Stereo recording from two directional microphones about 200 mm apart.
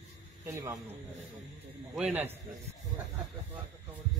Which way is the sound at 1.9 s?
5° right (ahead or behind).